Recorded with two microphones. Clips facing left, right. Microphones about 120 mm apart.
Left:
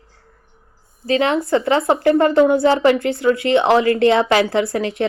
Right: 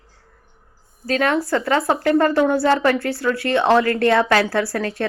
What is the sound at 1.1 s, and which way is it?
A woman's voice, 20° left (ahead or behind).